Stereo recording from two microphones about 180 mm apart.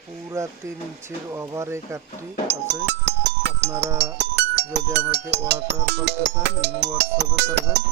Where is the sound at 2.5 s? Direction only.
70° right (ahead or behind).